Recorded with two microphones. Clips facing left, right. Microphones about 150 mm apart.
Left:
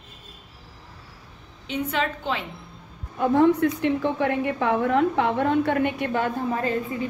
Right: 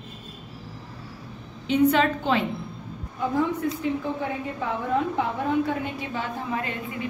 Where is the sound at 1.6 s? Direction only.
15° left (ahead or behind).